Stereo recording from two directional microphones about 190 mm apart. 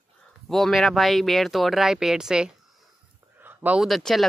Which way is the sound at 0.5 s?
Centre (ahead or behind).